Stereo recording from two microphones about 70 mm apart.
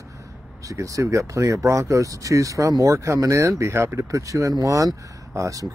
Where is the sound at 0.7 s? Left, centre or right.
Right.